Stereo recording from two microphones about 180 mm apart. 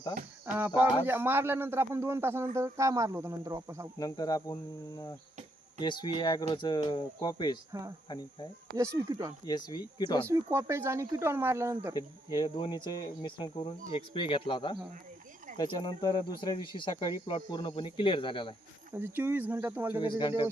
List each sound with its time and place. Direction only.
0.4 s a man's voice: 10° right (ahead or behind)
3.9 s speech: 20° left (ahead or behind)
5.8 s speech: 25° left (ahead or behind)
8.7 s speech: 20° right (ahead or behind)
9.5 s speech: 25° left (ahead or behind)
10.2 s a man's voice: 15° right (ahead or behind)
11.9 s speech: 25° left (ahead or behind)
18.9 s a man's voice: 10° right (ahead or behind)
20.0 s speech: 25° left (ahead or behind)